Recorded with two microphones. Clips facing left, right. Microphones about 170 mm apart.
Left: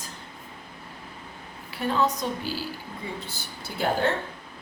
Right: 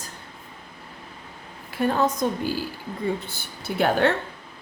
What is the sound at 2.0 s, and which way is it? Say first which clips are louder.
Speech: right 3 dB; 50° right (ahead or behind).